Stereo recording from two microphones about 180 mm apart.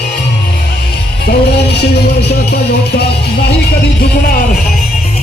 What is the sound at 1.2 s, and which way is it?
Music, 65° left (ahead or behind).